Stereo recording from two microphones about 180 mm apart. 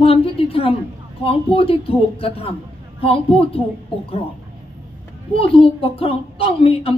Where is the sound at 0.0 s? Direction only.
30° left (ahead or behind).